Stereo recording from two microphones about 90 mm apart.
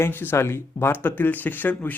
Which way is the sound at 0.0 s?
25° left (ahead or behind).